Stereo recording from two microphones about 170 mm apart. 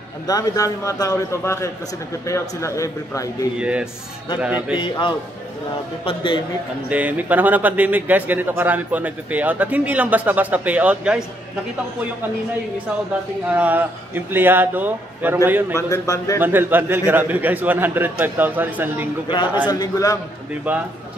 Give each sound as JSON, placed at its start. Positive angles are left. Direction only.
{"t": 0.3, "sound": "a man's voice", "side_deg": 20}
{"t": 3.5, "sound": "a man's voice", "side_deg": -5}
{"t": 4.7, "sound": "a man's voice", "side_deg": 25}
{"t": 6.9, "sound": "a man's voice", "side_deg": -10}
{"t": 13.5, "sound": "a man's voice", "side_deg": -10}
{"t": 15.7, "sound": "a man's voice", "side_deg": 20}
{"t": 16.3, "sound": "a man's voice", "side_deg": -10}
{"t": 19.7, "sound": "a man's voice", "side_deg": 20}
{"t": 20.7, "sound": "a man's voice", "side_deg": -5}